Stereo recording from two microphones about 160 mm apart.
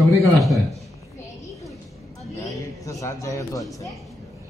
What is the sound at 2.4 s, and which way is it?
A man's voice, 20° left (ahead or behind).